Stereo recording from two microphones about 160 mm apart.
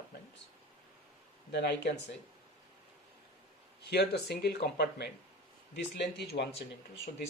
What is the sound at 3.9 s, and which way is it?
Speech, 90° left.